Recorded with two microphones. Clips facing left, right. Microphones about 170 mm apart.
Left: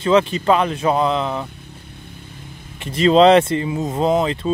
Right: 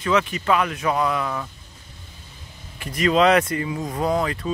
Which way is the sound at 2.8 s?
25° left (ahead or behind).